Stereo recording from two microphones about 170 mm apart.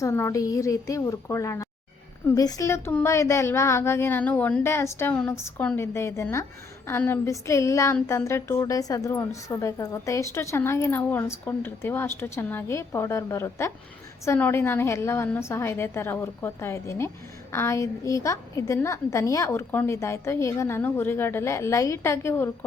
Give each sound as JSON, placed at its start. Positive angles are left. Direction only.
{"t": 0.0, "sound": "a woman's voice", "side_deg": 15}